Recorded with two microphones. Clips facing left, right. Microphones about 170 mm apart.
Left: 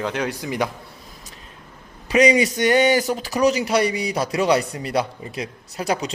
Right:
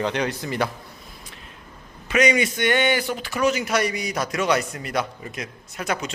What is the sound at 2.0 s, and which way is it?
Speech, 35° left (ahead or behind).